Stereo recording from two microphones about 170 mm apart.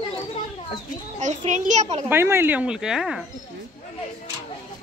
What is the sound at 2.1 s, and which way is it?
Speech, 15° right (ahead or behind).